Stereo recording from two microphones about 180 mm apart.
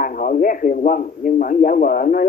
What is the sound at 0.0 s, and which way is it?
A man's voice, 50° left (ahead or behind).